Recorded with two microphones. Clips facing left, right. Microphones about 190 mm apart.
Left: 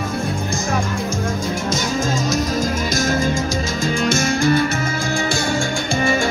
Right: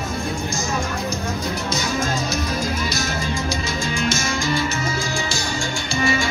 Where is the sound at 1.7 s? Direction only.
45° left (ahead or behind).